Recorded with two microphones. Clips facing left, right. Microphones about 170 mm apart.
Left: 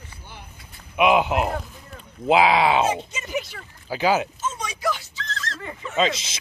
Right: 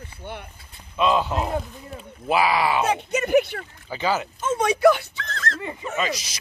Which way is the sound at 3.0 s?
60° right (ahead or behind).